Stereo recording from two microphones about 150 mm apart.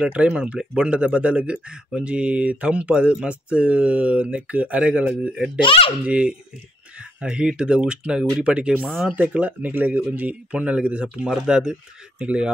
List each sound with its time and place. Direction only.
0.0 s speech: 5° right (ahead or behind)
5.6 s speech: 35° left (ahead or behind)
6.0 s speech: 10° right (ahead or behind)
9.1 s speech: 10° right (ahead or behind)